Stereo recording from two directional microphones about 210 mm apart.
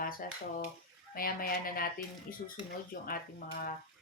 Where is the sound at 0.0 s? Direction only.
40° left (ahead or behind).